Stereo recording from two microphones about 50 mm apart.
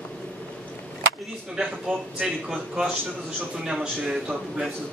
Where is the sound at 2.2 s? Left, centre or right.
Centre.